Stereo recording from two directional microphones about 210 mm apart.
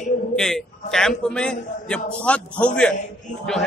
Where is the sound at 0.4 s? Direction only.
Centre (ahead or behind).